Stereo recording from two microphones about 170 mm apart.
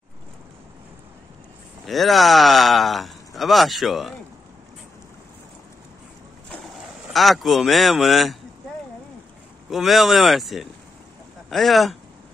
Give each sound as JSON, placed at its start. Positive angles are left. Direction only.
{"t": 1.9, "sound": "speech", "side_deg": 0}
{"t": 6.5, "sound": "speech", "side_deg": 0}
{"t": 9.7, "sound": "speech", "side_deg": 0}